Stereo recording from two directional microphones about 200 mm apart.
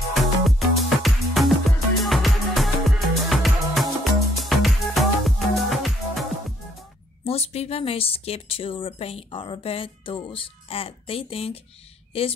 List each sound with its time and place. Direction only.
0.1 s music: centre (ahead or behind)
7.2 s speech: 30° left (ahead or behind)